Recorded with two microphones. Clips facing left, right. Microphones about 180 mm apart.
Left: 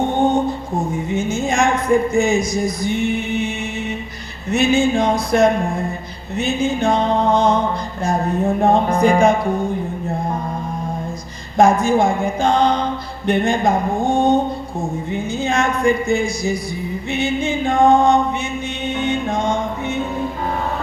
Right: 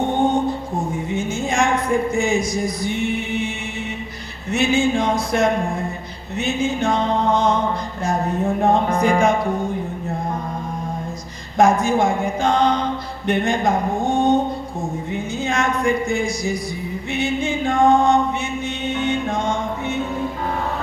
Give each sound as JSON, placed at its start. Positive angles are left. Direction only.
{"t": 1.1, "sound": "music", "side_deg": 45}
{"t": 2.1, "sound": "speech", "side_deg": 45}
{"t": 4.5, "sound": "music", "side_deg": 40}
{"t": 8.6, "sound": "music", "side_deg": 30}
{"t": 11.5, "sound": "a sound", "side_deg": 30}
{"t": 13.2, "sound": "music", "side_deg": 30}
{"t": 15.1, "sound": "a sound", "side_deg": 30}
{"t": 18.9, "sound": "music", "side_deg": 15}